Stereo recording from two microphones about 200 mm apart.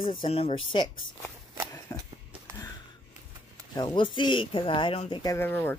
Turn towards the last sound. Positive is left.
turn(degrees=10)  # may be behind; listen again after turning